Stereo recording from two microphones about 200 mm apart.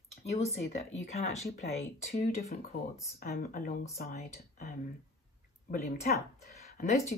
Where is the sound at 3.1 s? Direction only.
45° left (ahead or behind).